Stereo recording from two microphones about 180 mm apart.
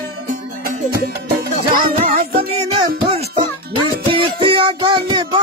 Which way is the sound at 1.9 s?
40° right (ahead or behind).